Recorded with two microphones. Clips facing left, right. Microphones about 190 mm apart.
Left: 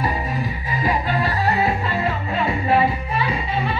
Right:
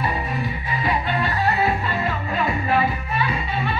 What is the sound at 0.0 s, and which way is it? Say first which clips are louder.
Music: left 1 dB; 35° left (ahead or behind).